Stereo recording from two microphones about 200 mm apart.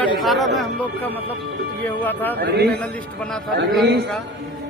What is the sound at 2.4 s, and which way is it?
Speech, 55° right (ahead or behind).